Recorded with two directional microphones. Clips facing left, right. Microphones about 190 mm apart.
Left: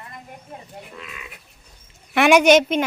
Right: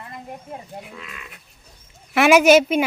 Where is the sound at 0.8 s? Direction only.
Centre (ahead or behind).